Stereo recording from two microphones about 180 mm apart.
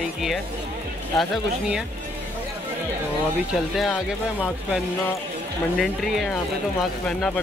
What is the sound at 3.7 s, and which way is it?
Speech, centre (ahead or behind).